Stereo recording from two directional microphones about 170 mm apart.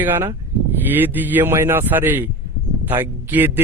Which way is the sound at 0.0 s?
15° right (ahead or behind).